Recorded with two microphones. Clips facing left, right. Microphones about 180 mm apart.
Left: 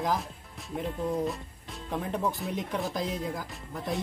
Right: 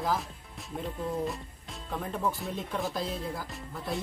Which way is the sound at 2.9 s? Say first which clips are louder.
Left 2 dB; 15° left (ahead or behind).